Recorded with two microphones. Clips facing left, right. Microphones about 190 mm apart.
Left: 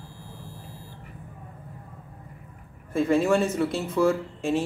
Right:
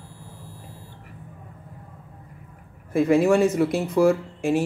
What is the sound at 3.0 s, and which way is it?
Speech, 15° right (ahead or behind).